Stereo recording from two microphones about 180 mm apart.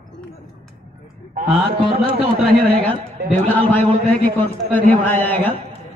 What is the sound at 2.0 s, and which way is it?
Speech, 30° right (ahead or behind).